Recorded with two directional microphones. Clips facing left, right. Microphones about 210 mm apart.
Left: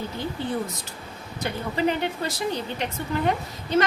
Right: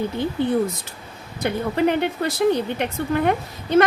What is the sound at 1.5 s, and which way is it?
Speech, 60° right (ahead or behind).